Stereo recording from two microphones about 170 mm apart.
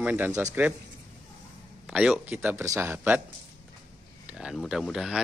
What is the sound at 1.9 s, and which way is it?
Speech, 5° right (ahead or behind).